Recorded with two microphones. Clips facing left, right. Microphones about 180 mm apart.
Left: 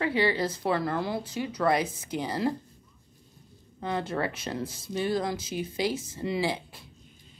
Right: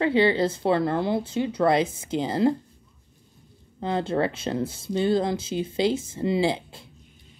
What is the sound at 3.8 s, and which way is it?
Speech, 25° right (ahead or behind).